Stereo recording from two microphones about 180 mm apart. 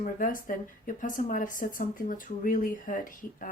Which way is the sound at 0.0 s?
50° left (ahead or behind).